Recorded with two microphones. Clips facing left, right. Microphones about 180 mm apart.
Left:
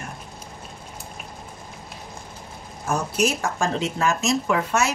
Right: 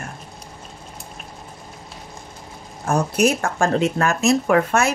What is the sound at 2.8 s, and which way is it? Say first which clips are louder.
Speech: right 5 dB; 60° right (ahead or behind).